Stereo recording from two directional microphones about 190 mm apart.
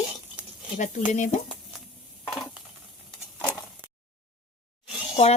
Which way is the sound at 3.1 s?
5° left (ahead or behind).